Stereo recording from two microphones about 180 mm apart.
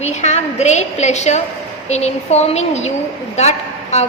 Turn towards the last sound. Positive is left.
turn(degrees=35)  # may be behind; listen again after turning